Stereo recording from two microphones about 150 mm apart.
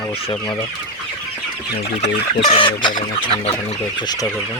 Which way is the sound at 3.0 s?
45° left (ahead or behind).